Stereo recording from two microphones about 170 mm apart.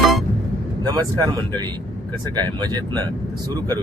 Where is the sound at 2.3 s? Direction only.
25° right (ahead or behind).